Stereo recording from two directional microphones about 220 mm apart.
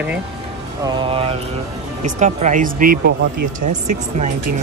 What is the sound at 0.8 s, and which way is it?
Mantra, 25° right (ahead or behind).